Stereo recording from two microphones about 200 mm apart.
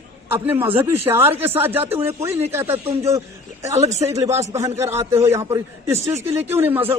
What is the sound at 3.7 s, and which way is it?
Speech, 35° right (ahead or behind).